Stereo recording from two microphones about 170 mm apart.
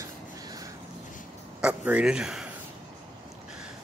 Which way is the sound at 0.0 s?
20° right (ahead or behind).